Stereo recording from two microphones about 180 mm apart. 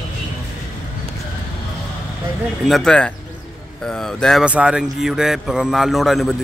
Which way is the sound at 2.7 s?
5° left (ahead or behind).